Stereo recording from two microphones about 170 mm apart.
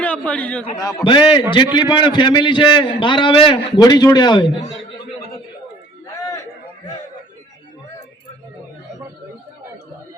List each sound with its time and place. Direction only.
0.0 s a man's voice: 10° left (ahead or behind)
0.8 s a man's voice: 20° left (ahead or behind)
1.0 s a man's voice: 30° left (ahead or behind)